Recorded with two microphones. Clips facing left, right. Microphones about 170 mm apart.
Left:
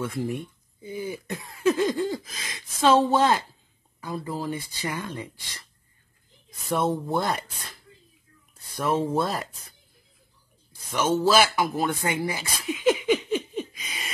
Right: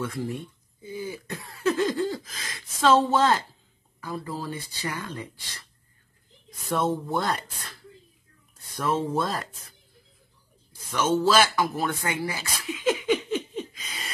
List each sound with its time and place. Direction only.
0.0 s throat clearing: 10° left (ahead or behind)
3.1 s speech: 15° left (ahead or behind)
7.0 s speech: 10° left (ahead or behind)
8.7 s speech: 10° left (ahead or behind)
10.9 s a man's voice: 10° left (ahead or behind)
11.3 s a sound: 15° left (ahead or behind)